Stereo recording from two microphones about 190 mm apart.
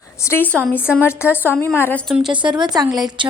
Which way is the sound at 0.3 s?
10° left (ahead or behind).